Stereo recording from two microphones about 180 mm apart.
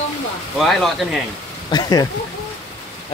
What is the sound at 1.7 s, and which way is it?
Speech, 20° left (ahead or behind).